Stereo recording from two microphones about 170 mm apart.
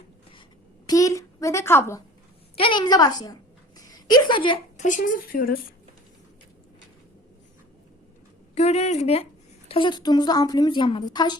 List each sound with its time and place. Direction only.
0.9 s a woman's voice: 20° left (ahead or behind)
2.6 s a woman's voice: 30° left (ahead or behind)
3.8 s a sound: 20° left (ahead or behind)
4.8 s speech: 50° left (ahead or behind)
8.5 s a woman's voice: 40° left (ahead or behind)